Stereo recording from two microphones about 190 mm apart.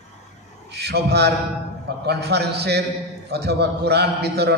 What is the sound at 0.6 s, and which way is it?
A man's voice, 60° right (ahead or behind).